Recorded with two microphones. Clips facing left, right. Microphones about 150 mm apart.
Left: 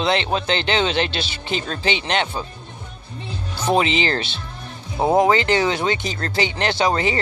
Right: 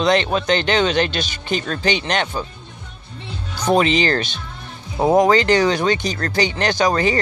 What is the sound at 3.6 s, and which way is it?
Speech, 20° left (ahead or behind).